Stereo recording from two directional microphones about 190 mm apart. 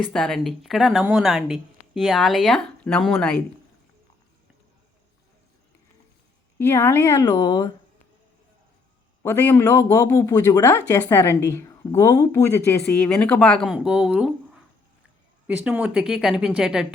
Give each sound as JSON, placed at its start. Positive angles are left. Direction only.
{"t": 0.1, "sound": "a woman's voice", "side_deg": 5}
{"t": 6.6, "sound": "speech", "side_deg": 10}
{"t": 9.2, "sound": "a woman's voice", "side_deg": 10}
{"t": 15.4, "sound": "a woman's voice", "side_deg": -10}